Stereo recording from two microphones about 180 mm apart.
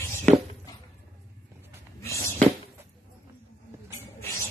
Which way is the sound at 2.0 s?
15° left (ahead or behind).